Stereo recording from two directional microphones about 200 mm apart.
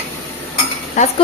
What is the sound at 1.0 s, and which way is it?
Speech, 35° left (ahead or behind).